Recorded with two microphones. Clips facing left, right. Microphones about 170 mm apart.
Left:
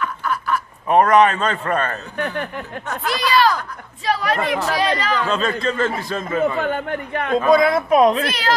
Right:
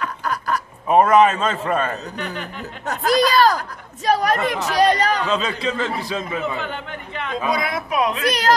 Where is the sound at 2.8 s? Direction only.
40° right (ahead or behind).